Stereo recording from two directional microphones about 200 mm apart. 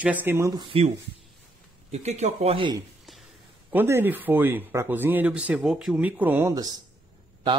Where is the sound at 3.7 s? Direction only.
10° right (ahead or behind).